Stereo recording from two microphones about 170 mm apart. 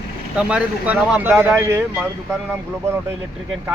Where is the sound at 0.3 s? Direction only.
5° right (ahead or behind).